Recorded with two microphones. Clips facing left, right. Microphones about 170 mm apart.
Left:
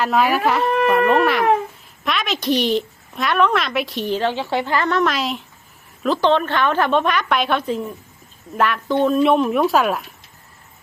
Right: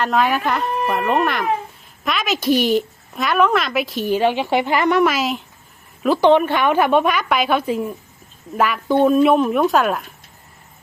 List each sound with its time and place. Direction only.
0.0 s a woman's voice: 5° left (ahead or behind)